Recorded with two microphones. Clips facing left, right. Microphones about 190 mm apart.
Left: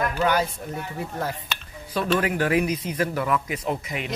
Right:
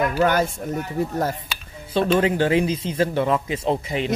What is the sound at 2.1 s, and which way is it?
Speech, 25° right (ahead or behind).